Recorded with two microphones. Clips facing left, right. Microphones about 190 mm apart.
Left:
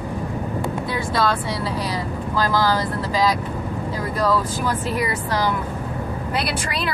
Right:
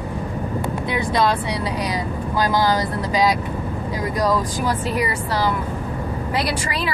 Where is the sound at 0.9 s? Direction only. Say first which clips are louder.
Right 3 dB; 20° right (ahead or behind).